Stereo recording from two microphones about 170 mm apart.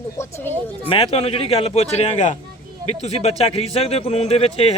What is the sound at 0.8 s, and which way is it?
A man's voice, 35° left (ahead or behind).